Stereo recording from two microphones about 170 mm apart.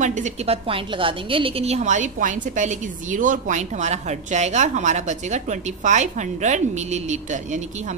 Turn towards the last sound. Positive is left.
turn(degrees=-45)  # may be behind; listen again after turning